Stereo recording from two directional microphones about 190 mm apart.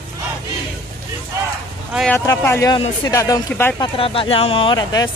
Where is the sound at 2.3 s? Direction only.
15° left (ahead or behind).